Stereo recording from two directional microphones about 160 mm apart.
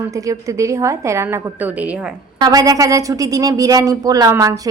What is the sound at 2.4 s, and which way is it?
A woman's voice, 25° right (ahead or behind).